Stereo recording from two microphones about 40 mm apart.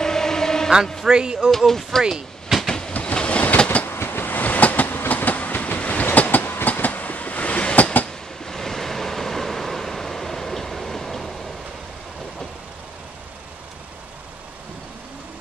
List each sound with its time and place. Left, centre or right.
0.0 s chant: centre
1.0 s a sound: centre
1.7 s speech: centre
2.6 s train: centre
3.2 s train: left
3.8 s train: left
4.2 s train: left
8.5 s waves: centre